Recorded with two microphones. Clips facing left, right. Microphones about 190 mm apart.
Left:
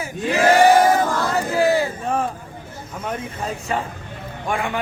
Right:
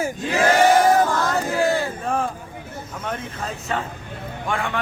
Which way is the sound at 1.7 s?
10° left (ahead or behind).